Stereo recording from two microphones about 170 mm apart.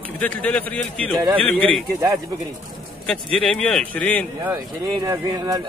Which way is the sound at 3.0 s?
5° left (ahead or behind).